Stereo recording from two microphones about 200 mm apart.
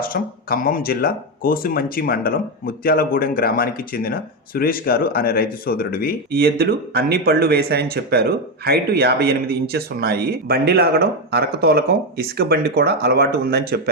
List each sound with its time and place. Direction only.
0.0 s speech: 45° left (ahead or behind)
6.3 s speech: 50° right (ahead or behind)